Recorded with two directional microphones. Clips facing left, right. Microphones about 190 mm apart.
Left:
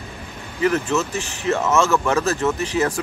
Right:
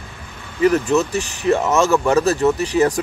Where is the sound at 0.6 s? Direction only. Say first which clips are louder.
Right 4 dB; 15° right (ahead or behind).